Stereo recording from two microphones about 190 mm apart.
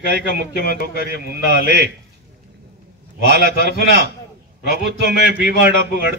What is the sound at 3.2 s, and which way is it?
Speech, 65° right (ahead or behind).